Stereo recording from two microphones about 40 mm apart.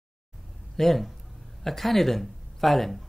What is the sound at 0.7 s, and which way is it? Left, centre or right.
Speech, centre.